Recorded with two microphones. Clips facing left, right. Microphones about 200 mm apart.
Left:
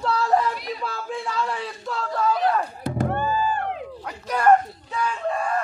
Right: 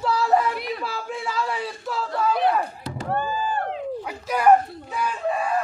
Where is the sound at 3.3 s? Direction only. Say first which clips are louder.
Left 2 dB; 40° right (ahead or behind).